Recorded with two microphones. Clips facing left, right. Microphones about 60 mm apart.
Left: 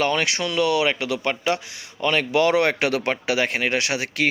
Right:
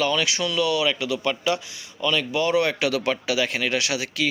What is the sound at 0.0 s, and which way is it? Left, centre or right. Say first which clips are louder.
Speech: left 1 dB; left.